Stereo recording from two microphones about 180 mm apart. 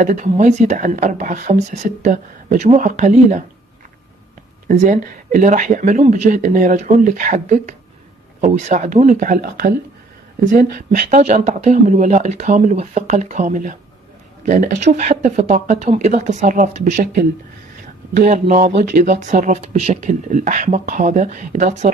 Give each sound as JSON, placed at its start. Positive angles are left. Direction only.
{"t": 0.0, "sound": "speech", "side_deg": -45}
{"t": 4.6, "sound": "speech", "side_deg": -50}
{"t": 18.2, "sound": "speech", "side_deg": -40}